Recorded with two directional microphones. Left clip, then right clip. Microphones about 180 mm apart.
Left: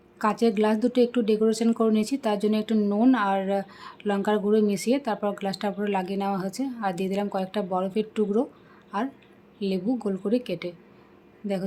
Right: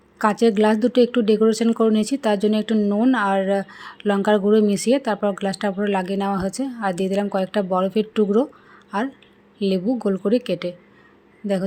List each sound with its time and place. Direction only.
0.2 s speech: 20° right (ahead or behind)